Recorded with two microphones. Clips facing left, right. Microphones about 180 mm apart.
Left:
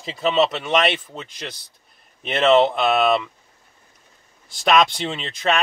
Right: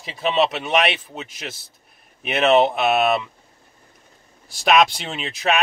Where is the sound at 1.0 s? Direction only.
10° right (ahead or behind).